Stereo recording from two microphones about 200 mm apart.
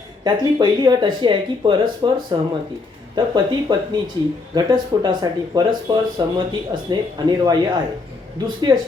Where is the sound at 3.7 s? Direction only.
25° right (ahead or behind).